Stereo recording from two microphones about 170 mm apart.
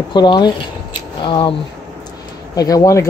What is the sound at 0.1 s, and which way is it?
Speech, 25° left (ahead or behind).